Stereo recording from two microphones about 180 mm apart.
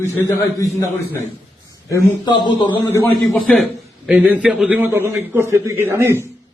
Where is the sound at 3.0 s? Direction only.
10° left (ahead or behind).